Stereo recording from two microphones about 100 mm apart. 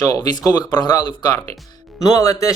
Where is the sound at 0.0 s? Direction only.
35° left (ahead or behind).